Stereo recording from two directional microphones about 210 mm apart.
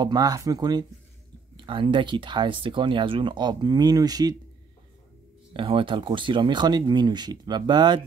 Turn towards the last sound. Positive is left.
turn(degrees=-20)  # may be behind; listen again after turning